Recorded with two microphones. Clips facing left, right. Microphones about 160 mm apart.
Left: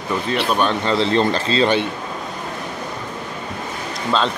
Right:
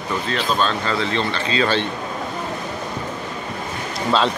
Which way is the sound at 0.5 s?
20° left (ahead or behind).